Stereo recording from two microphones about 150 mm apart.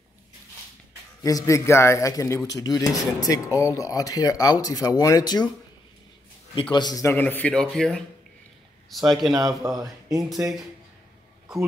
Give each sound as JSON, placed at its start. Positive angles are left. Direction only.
{"t": 1.2, "sound": "a man's voice", "side_deg": 20}
{"t": 6.7, "sound": "speech", "side_deg": 25}
{"t": 9.3, "sound": "speech", "side_deg": -25}
{"t": 11.5, "sound": "speech", "side_deg": 0}